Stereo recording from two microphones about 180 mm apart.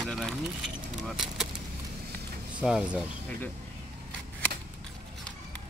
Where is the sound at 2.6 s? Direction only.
5° right (ahead or behind).